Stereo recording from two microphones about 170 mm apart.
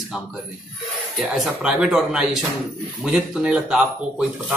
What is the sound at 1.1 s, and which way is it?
Speech, centre (ahead or behind).